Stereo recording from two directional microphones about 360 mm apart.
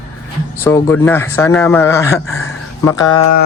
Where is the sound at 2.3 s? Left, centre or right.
Left.